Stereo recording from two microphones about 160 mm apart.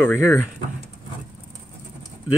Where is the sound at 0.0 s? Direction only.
15° left (ahead or behind).